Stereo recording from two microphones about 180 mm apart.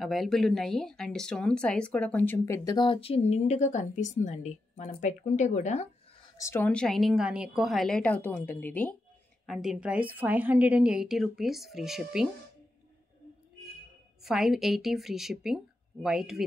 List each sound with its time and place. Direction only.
0.0 s speech: centre (ahead or behind); by 5.9 s 40° left (ahead or behind)
6.3 s speech: 15° left (ahead or behind)
9.5 s a woman's voice: 5° right (ahead or behind)
14.2 s a woman's voice: centre (ahead or behind)